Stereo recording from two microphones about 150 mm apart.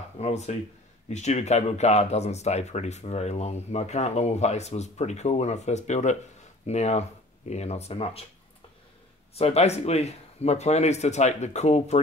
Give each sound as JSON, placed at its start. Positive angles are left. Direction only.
{"t": 0.2, "sound": "speech", "side_deg": 45}
{"t": 9.3, "sound": "speech", "side_deg": 45}